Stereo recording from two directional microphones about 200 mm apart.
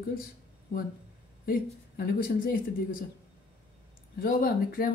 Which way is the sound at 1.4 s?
50° left (ahead or behind).